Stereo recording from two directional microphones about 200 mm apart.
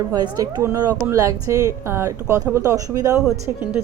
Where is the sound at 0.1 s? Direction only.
20° right (ahead or behind).